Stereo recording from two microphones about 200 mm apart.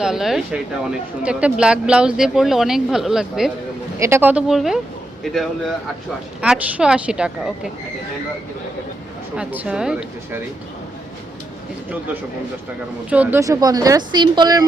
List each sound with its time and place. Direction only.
0.0 s speech: centre (ahead or behind)
9.3 s speech: 5° right (ahead or behind)
13.1 s speech: 10° right (ahead or behind)